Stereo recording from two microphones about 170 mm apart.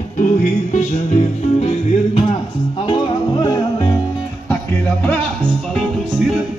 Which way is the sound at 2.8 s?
25° left (ahead or behind).